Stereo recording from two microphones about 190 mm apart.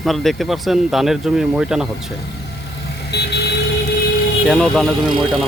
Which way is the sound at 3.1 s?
60° left (ahead or behind).